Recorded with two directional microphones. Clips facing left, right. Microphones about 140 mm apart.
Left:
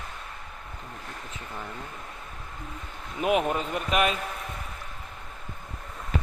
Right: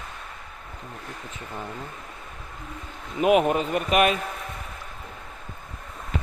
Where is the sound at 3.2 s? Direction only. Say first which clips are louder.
Right 5 dB; 15° right (ahead or behind).